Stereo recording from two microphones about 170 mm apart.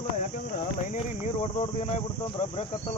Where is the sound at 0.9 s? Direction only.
40° left (ahead or behind).